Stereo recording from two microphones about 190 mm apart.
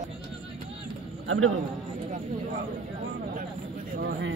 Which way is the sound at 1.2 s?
90° right.